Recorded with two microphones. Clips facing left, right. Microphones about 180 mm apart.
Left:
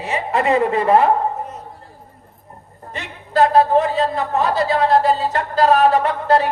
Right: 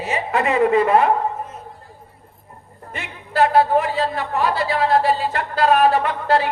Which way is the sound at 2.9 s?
35° left (ahead or behind).